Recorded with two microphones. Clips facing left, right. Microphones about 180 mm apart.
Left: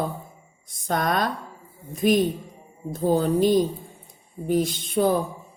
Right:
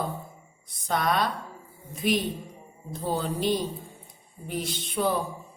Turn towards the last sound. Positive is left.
turn(degrees=45)  # may be behind; listen again after turning